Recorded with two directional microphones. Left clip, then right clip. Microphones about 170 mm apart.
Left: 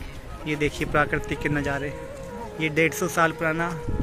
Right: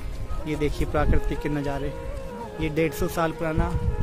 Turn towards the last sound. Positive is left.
turn(degrees=-5)  # may be behind; listen again after turning